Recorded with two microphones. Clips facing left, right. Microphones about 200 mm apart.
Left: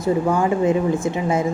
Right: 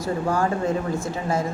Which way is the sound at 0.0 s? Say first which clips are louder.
Left 4 dB; 20° left (ahead or behind).